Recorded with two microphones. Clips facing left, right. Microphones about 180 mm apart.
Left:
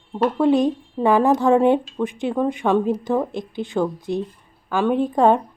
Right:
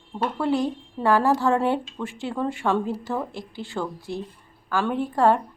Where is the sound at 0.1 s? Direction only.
20° left (ahead or behind).